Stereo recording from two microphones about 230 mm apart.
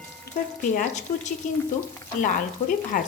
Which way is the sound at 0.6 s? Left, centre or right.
Left.